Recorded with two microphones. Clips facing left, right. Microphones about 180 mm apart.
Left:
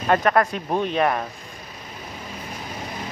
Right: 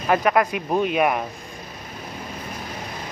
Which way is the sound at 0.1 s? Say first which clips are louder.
Even; 10° right (ahead or behind).